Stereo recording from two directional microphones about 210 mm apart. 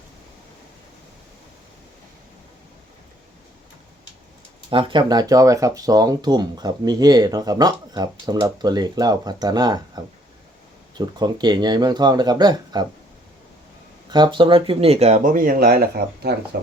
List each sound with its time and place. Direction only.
4.7 s speech: 25° right (ahead or behind)
14.1 s speech: 20° right (ahead or behind); by 16.3 s 45° right (ahead or behind)